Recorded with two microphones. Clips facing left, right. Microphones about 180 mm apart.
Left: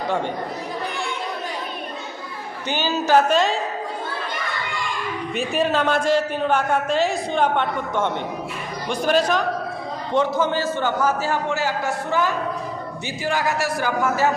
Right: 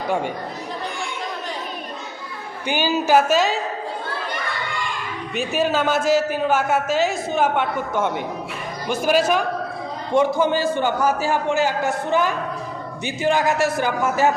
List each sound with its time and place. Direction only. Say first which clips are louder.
2.6 s a man's voice: right 2 dB; 10° right (ahead or behind)
5.3 s a man's voice: right 1 dB; centre (ahead or behind); by 14.3 s 20° right (ahead or behind)